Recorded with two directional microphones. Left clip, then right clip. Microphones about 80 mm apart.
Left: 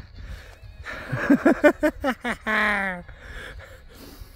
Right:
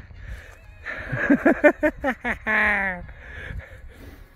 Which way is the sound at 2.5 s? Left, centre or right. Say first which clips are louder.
Right 2 dB; left.